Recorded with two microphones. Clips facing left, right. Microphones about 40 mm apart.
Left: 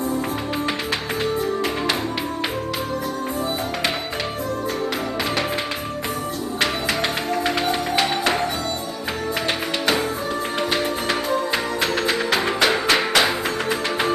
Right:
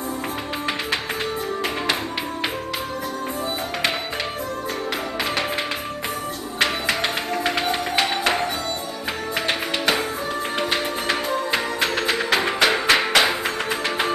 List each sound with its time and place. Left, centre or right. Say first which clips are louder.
6.6 s music: right 1 dB; right
9.5 s music: even; right